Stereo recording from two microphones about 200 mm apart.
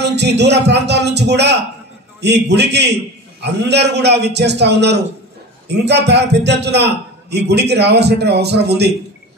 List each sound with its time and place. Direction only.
0.0 s a man's voice: 60° right (ahead or behind)